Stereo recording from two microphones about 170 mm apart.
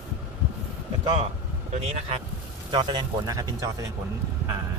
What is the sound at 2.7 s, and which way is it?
Speech, 25° right (ahead or behind).